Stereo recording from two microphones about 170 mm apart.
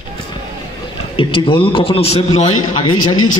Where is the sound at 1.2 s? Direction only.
30° left (ahead or behind).